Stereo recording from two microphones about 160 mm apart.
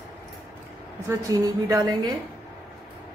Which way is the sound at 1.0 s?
20° right (ahead or behind).